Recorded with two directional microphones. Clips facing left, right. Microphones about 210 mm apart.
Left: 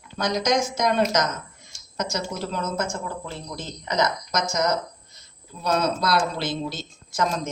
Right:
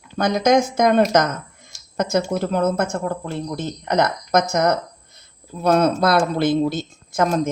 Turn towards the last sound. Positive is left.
turn(degrees=-55)  # may be behind; listen again after turning